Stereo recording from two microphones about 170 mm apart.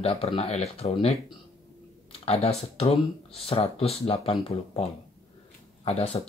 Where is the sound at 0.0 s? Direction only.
35° left (ahead or behind).